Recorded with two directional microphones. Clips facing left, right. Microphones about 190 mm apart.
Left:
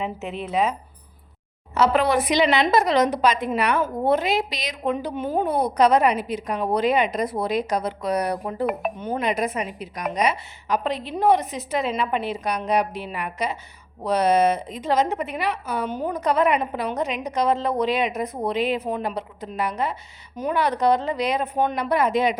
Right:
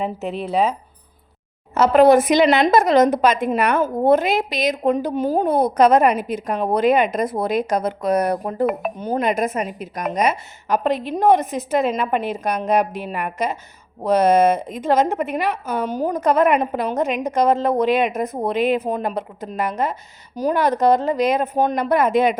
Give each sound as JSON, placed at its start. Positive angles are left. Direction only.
{"t": 0.0, "sound": "speech", "side_deg": -35}
{"t": 1.7, "sound": "a woman's voice", "side_deg": -45}